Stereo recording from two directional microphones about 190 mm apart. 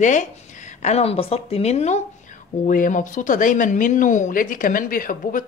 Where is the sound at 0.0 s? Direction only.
40° left (ahead or behind).